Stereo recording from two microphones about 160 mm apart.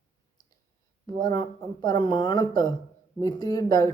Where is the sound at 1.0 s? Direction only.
25° left (ahead or behind).